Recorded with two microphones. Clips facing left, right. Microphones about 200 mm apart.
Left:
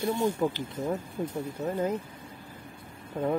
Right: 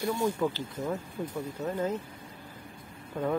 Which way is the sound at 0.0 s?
25° left (ahead or behind).